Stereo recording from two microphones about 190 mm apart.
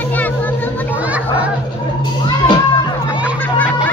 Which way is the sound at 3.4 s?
10° left (ahead or behind).